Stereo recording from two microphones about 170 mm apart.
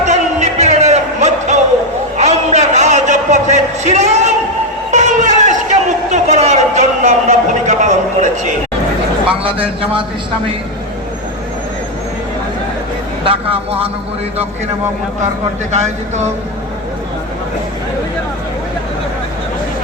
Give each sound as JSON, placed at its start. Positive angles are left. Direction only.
{"t": 0.0, "sound": "music", "side_deg": -45}
{"t": 2.1, "sound": "a sound", "side_deg": -40}
{"t": 9.3, "sound": "a man's voice", "side_deg": -30}
{"t": 13.2, "sound": "speech", "side_deg": -35}
{"t": 15.7, "sound": "speech", "side_deg": -40}